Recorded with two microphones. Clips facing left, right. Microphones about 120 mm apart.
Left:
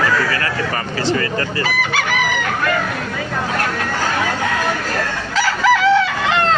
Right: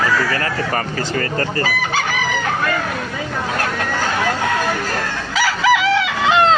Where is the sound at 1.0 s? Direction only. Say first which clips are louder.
Left 2 dB; 40° right (ahead or behind).